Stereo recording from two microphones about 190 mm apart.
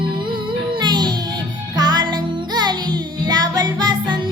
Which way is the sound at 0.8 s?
25° right (ahead or behind).